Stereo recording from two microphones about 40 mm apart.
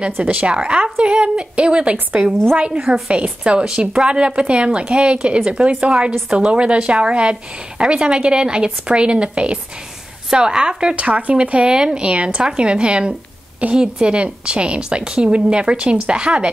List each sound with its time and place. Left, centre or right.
0.0 s a woman's voice: right
11.0 s a woman's voice: right